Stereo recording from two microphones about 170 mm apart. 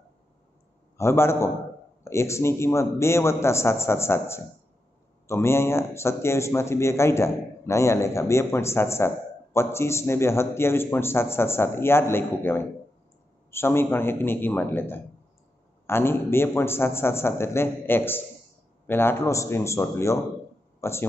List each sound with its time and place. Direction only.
0.9 s speech: 15° left (ahead or behind)